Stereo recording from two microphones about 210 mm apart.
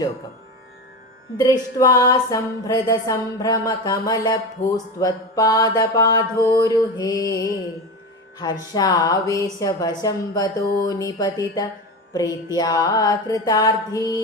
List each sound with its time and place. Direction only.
1.4 s music: 15° left (ahead or behind)
8.7 s music: 20° left (ahead or behind)